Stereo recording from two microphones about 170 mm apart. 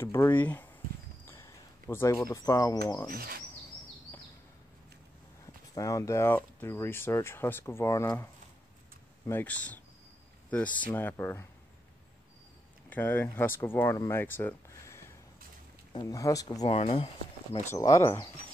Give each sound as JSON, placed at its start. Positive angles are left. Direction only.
{"t": 0.0, "sound": "speech", "side_deg": 15}
{"t": 3.1, "sound": "speech", "side_deg": -60}
{"t": 5.8, "sound": "speech", "side_deg": 20}
{"t": 9.3, "sound": "speech", "side_deg": 10}
{"t": 12.9, "sound": "speech", "side_deg": 10}
{"t": 16.6, "sound": "speech", "side_deg": 35}
{"t": 17.7, "sound": "speech", "side_deg": 20}